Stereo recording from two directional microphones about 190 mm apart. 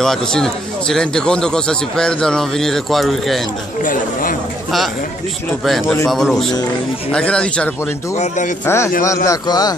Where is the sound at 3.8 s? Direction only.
45° left (ahead or behind).